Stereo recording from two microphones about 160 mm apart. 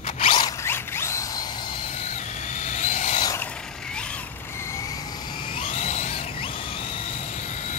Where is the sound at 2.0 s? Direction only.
45° left (ahead or behind).